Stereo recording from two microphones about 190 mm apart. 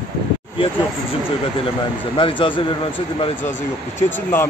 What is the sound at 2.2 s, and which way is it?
Speech, 25° left (ahead or behind).